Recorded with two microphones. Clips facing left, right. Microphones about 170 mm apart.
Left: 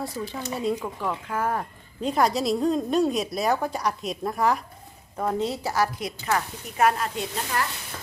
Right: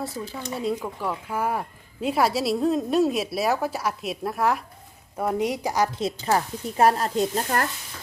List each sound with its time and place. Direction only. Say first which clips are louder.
0.5 s a woman's voice: even; centre (ahead or behind); by 7.7 s 45° right (ahead or behind)